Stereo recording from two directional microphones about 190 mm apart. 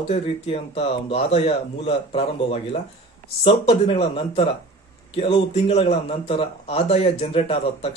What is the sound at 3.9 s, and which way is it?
A man's voice, 30° left (ahead or behind).